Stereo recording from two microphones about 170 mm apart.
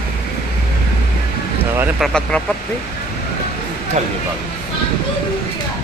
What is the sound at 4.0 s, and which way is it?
Speech, 40° right (ahead or behind).